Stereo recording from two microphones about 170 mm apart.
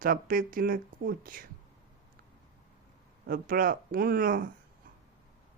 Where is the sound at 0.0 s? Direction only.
55° right (ahead or behind).